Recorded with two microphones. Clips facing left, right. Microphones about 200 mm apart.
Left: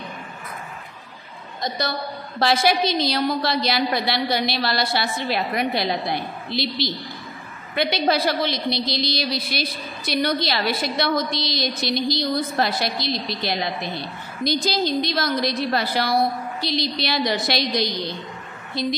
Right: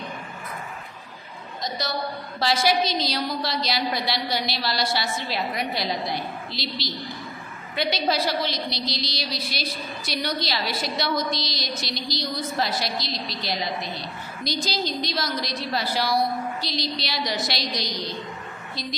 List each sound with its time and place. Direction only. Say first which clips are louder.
1.6 s a woman's voice: left 2 dB; 55° left (ahead or behind)